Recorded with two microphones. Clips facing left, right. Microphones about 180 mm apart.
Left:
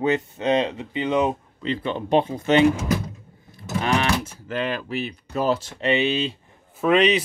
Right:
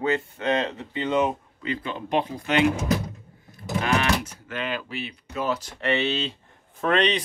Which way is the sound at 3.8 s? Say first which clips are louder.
Left 2 dB; 30° left (ahead or behind).